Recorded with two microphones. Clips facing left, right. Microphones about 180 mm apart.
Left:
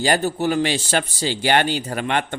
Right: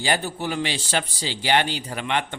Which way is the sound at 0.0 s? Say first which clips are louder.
Left 6 dB; 45° left (ahead or behind).